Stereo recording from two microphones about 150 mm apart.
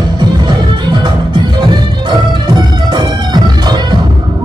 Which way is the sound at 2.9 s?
30° right (ahead or behind).